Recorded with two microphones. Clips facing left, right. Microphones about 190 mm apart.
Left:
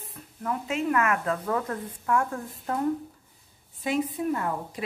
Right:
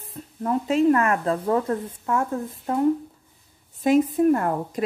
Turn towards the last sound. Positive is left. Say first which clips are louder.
# right 7 dB
turn(degrees=-50)  # may be behind; listen again after turning